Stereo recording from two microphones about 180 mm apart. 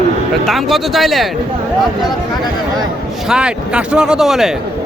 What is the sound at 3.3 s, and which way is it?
Speech, 5° right (ahead or behind).